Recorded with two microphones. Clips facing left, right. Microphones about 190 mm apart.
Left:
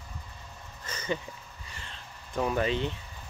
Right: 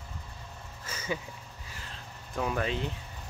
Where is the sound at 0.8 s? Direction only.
5° right (ahead or behind).